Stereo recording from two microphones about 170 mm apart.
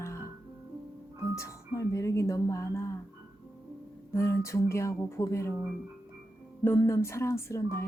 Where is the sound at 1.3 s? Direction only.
20° left (ahead or behind).